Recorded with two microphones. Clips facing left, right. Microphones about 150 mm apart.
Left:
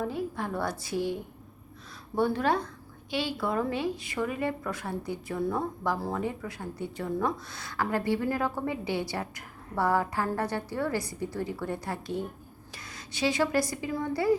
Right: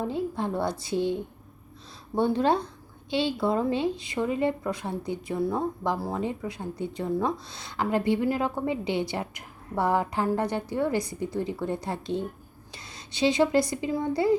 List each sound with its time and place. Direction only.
0.0 s a woman's voice: 25° right (ahead or behind)